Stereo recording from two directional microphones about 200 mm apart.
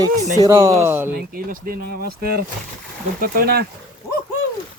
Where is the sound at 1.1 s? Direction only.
45° right (ahead or behind).